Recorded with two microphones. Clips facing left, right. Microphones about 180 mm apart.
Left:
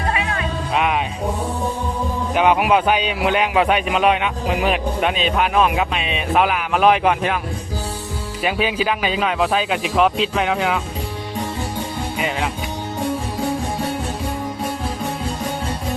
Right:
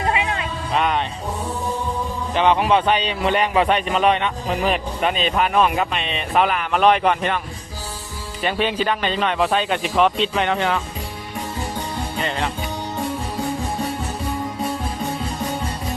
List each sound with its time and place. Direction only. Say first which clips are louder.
0.0 s music: right 1 dB; 20° right (ahead or behind)
0.7 s speech: even; 5° left (ahead or behind)
2.3 s speech: left 1 dB; 10° left (ahead or behind)
8.4 s speech: left 1 dB; 5° left (ahead or behind)
12.1 s music: left 1 dB; 10° left (ahead or behind)